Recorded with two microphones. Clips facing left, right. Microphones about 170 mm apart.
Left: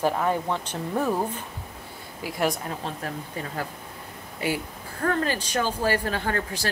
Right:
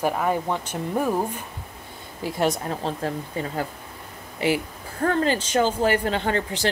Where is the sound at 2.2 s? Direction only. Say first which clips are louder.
Right 3 dB; 25° right (ahead or behind).